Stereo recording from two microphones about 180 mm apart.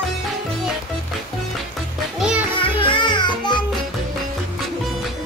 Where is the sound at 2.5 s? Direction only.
30° left (ahead or behind).